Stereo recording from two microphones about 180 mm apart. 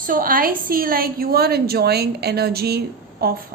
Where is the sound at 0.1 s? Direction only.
50° right (ahead or behind).